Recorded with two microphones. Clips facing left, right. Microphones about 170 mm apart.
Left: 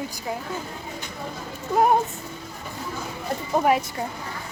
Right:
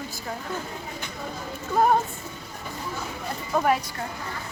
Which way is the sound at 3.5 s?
20° left (ahead or behind).